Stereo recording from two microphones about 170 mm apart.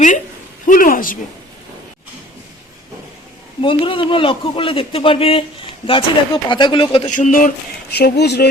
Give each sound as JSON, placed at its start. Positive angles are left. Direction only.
{"t": 0.7, "sound": "speech", "side_deg": 55}
{"t": 3.6, "sound": "speech", "side_deg": 30}
{"t": 7.1, "sound": "speech", "side_deg": 50}